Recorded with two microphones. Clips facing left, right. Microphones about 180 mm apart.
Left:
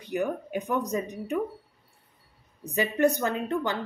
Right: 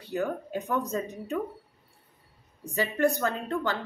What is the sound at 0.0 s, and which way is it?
A woman's voice, 15° left (ahead or behind).